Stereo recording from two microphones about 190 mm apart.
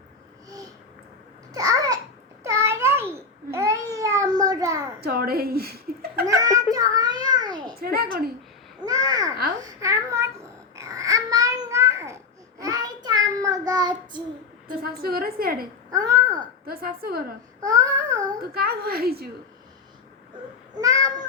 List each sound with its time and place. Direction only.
1.5 s babbling: 20° right (ahead or behind)
4.9 s a sound: 55° right (ahead or behind)
6.2 s a sound: 15° right (ahead or behind)
8.8 s babbling: 20° right (ahead or behind)
9.6 s a sound: 15° right (ahead or behind)
10.8 s babbling: 15° right (ahead or behind)
14.8 s a woman's voice: 55° right (ahead or behind)
15.9 s babbling: 15° right (ahead or behind)
16.6 s a woman's voice: 50° right (ahead or behind)
17.6 s babbling: 20° right (ahead or behind)
18.5 s a woman's voice: 55° right (ahead or behind)
20.7 s a sound: 15° right (ahead or behind)